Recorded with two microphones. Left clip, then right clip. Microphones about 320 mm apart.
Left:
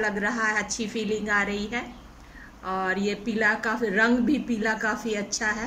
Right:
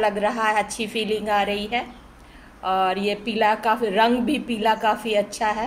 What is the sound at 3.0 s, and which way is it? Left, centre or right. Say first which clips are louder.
A woman's voice: right 4 dB; centre.